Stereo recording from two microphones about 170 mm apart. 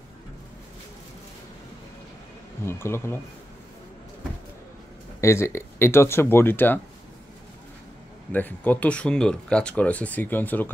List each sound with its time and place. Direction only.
2.6 s speech: 15° left (ahead or behind)
5.2 s speech: 15° left (ahead or behind)
8.3 s speech: 10° left (ahead or behind)